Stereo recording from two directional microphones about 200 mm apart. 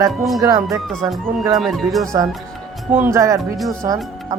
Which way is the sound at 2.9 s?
10° right (ahead or behind).